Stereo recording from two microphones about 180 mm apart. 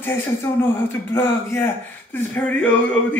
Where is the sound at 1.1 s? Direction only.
15° left (ahead or behind).